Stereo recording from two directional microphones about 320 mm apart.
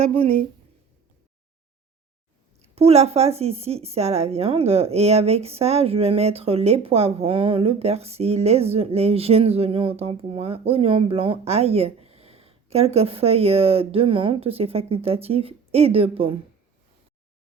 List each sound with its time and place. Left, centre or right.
0.0 s speech: centre
2.7 s a woman's voice: centre